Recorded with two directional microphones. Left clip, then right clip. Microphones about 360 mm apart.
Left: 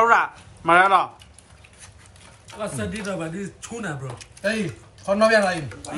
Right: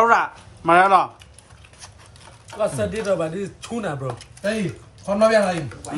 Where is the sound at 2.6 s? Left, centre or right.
Right.